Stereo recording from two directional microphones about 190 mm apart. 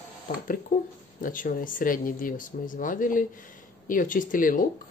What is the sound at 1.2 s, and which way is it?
Speech, 45° left (ahead or behind).